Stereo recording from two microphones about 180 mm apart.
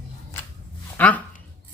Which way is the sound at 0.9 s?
10° left (ahead or behind).